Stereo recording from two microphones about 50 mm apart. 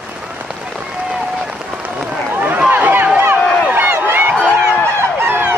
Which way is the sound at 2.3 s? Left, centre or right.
Right.